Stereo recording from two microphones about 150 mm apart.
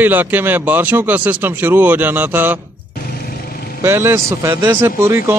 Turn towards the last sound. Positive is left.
turn(degrees=-15)  # may be behind; listen again after turning